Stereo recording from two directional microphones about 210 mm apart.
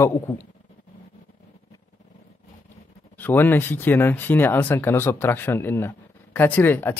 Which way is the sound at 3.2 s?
10° left (ahead or behind).